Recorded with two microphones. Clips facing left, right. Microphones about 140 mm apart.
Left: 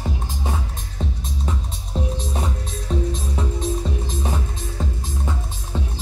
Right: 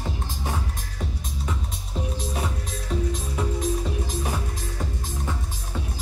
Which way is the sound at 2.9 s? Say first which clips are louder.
Left 3 dB; 35° left (ahead or behind).